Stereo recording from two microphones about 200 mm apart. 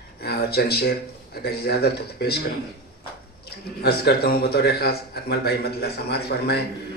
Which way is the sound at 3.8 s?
55° left (ahead or behind).